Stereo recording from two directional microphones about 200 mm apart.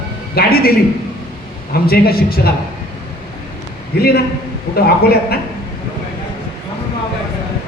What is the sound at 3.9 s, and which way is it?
A man's voice, 50° left (ahead or behind).